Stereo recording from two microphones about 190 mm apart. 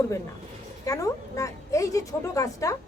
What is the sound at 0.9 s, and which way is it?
A woman's voice, 15° left (ahead or behind).